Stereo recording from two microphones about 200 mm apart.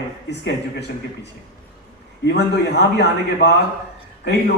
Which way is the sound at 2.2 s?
55° left (ahead or behind).